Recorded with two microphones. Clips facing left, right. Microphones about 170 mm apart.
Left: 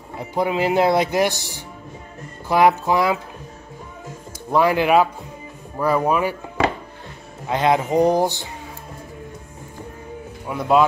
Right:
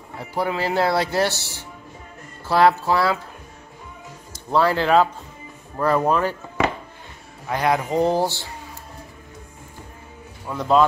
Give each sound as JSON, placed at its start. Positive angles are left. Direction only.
{"t": 0.1, "sound": "a man's voice", "side_deg": 20}
{"t": 4.5, "sound": "a man's voice", "side_deg": 15}
{"t": 7.4, "sound": "speech", "side_deg": 20}
{"t": 10.4, "sound": "speech", "side_deg": 10}